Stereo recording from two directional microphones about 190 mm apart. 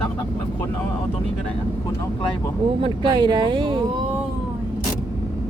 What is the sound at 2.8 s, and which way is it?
Speech, 25° right (ahead or behind).